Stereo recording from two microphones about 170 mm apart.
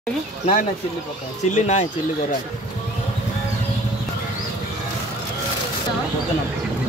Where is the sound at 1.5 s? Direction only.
40° left (ahead or behind).